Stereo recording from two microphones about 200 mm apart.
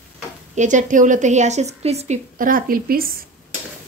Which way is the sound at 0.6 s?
40° right (ahead or behind).